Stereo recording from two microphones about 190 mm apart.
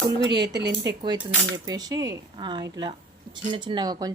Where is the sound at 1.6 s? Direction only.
20° right (ahead or behind).